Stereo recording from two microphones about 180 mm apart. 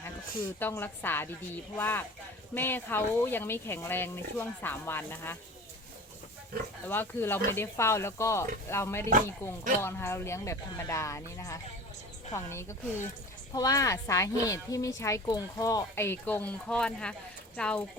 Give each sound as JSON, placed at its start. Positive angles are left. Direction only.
{"t": 0.4, "sound": "speech", "side_deg": 10}
{"t": 6.8, "sound": "speech", "side_deg": 10}